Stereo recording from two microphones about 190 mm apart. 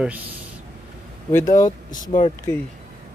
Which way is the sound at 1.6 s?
20° left (ahead or behind).